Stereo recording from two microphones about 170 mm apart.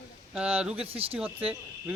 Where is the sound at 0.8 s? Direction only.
35° right (ahead or behind).